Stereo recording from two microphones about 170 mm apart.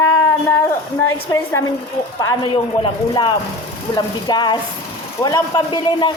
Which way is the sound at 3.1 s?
25° left (ahead or behind).